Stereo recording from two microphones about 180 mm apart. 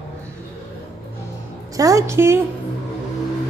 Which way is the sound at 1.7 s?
20° right (ahead or behind).